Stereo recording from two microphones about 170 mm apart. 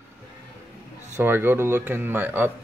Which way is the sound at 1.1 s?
10° right (ahead or behind).